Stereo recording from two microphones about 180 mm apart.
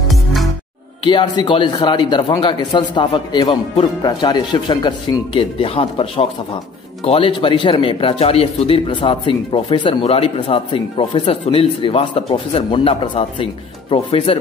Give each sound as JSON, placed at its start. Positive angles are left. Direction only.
{"t": 0.1, "sound": "music", "side_deg": 0}
{"t": 1.0, "sound": "speech", "side_deg": 25}